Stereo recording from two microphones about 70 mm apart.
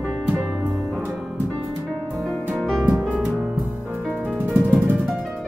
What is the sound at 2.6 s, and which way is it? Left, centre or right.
Music, centre.